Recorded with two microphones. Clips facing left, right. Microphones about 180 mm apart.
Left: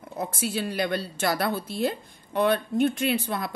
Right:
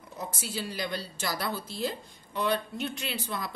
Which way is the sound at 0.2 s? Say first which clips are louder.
Left 7 dB; 60° left (ahead or behind).